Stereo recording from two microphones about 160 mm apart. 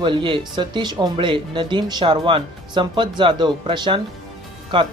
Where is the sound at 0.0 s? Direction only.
30° right (ahead or behind).